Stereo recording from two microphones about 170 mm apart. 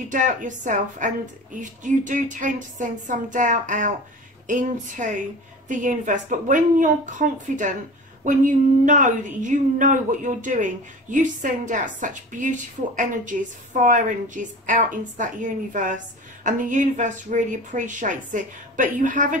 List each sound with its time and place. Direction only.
0.1 s speech: 50° right (ahead or behind)